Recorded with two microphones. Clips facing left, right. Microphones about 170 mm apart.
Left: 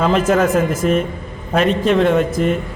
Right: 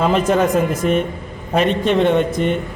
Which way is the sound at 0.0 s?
Centre (ahead or behind).